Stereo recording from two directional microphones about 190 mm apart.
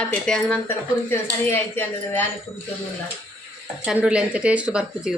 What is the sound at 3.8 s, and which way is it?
A woman's voice, 5° right (ahead or behind).